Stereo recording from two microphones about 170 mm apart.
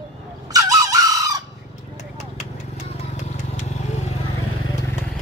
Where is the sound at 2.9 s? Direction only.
40° left (ahead or behind).